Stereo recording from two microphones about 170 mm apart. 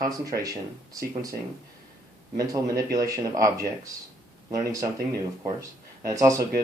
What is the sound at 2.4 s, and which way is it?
Speech, 20° right (ahead or behind).